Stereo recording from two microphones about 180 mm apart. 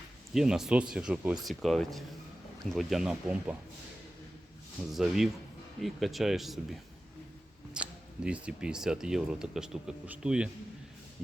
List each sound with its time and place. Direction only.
0.3 s speech: 5° right (ahead or behind)
4.9 s speech: centre (ahead or behind)